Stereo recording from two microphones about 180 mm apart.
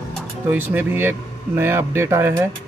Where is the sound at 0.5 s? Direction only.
10° right (ahead or behind).